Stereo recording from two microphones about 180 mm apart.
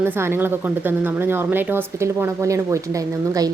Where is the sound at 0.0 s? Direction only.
10° right (ahead or behind).